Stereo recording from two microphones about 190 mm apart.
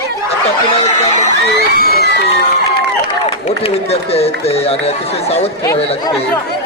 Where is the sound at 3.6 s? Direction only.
30° left (ahead or behind).